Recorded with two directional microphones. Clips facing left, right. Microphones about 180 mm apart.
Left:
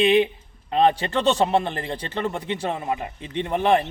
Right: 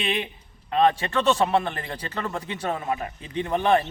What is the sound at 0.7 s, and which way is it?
A man's voice, 30° left (ahead or behind).